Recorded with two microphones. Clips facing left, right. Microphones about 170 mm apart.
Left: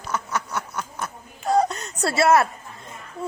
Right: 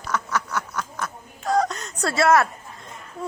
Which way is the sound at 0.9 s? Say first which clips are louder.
Right 1 dB; 30° left (ahead or behind).